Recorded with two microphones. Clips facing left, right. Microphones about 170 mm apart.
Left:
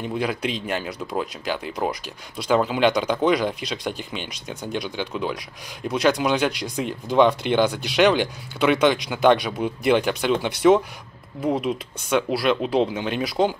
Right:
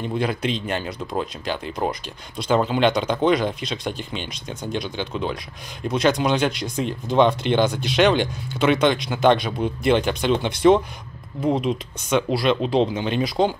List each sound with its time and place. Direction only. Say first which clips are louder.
0.0 s speech: right 1 dB; 5° left (ahead or behind)